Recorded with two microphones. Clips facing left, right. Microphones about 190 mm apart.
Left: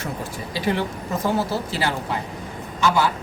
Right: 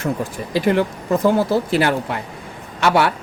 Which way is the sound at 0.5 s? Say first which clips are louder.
Right 7 dB; 55° right (ahead or behind).